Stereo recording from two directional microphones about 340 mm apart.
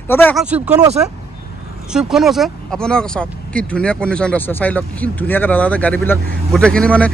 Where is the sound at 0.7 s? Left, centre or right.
Centre.